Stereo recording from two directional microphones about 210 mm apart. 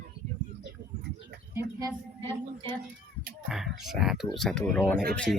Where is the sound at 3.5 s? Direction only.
Centre (ahead or behind).